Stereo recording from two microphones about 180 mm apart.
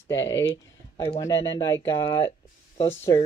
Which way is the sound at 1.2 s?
15° left (ahead or behind).